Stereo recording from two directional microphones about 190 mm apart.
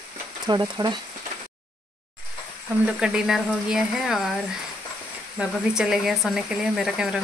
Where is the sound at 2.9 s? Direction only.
5° right (ahead or behind).